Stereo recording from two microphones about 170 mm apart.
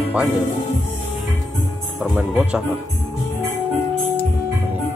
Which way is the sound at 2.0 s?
5° right (ahead or behind).